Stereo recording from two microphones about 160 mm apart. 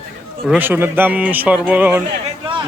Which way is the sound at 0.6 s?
15° right (ahead or behind).